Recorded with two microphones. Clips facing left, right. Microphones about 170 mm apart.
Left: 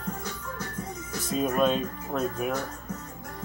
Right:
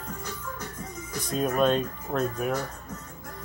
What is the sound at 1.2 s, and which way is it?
Speech, centre (ahead or behind).